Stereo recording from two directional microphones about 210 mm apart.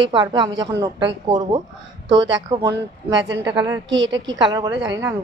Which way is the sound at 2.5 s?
20° right (ahead or behind).